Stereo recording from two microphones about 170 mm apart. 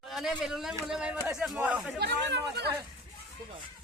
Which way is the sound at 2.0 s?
75° right (ahead or behind).